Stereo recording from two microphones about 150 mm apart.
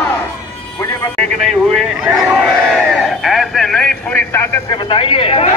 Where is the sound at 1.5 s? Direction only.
Centre (ahead or behind).